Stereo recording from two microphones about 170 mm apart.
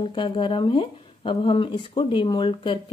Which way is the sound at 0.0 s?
30° left (ahead or behind).